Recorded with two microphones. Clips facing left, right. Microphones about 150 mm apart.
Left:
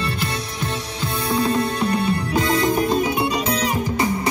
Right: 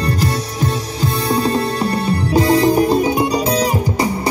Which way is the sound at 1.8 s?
40° right (ahead or behind).